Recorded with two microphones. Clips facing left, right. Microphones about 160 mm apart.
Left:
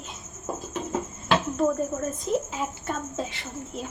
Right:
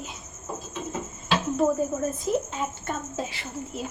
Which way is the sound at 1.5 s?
5° right (ahead or behind).